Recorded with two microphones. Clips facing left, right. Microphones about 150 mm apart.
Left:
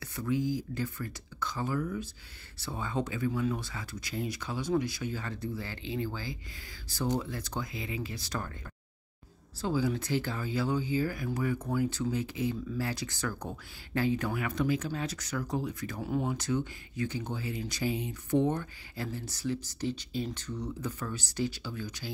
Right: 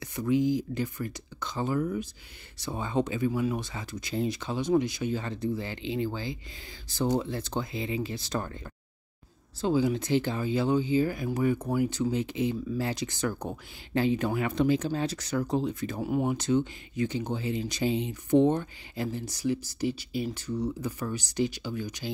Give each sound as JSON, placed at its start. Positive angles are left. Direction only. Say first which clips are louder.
{"t": 0.0, "sound": "speech", "louder": "right 5 dB", "side_deg": -15}
{"t": 9.6, "sound": "speech", "louder": "right 5 dB", "side_deg": -20}
{"t": 16.0, "sound": "speech", "louder": "right 4 dB", "side_deg": -15}